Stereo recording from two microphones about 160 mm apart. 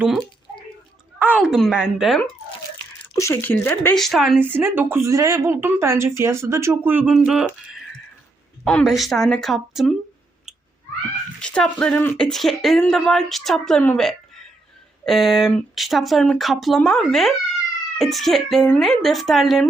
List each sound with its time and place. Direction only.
0.0 s speech: centre (ahead or behind)
3.2 s speech: 15° left (ahead or behind)
3.9 s speech: centre (ahead or behind)
4.4 s speech: 15° right (ahead or behind)
8.6 s speech: centre (ahead or behind)
11.3 s speech: 5° left (ahead or behind)